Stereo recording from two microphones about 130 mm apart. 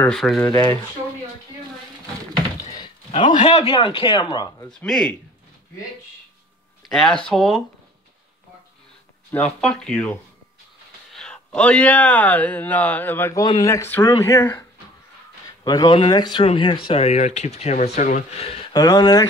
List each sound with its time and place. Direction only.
0.1 s speech: centre (ahead or behind)
3.1 s a man's voice: 40° left (ahead or behind)
3.3 s speech: 55° left (ahead or behind); by 4.5 s 40° left (ahead or behind)
4.6 s speech: 5° left (ahead or behind)
7.2 s speech: centre (ahead or behind)
9.3 s speech: 10° left (ahead or behind)
13.3 s speech: 25° left (ahead or behind)
15.6 s speech: 30° left (ahead or behind); by 18.7 s 50° left (ahead or behind)
18.7 s speech: 30° left (ahead or behind)